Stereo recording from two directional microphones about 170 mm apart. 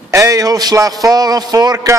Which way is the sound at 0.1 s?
20° right (ahead or behind).